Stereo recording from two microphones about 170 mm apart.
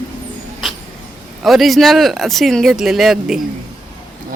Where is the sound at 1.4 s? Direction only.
Centre (ahead or behind).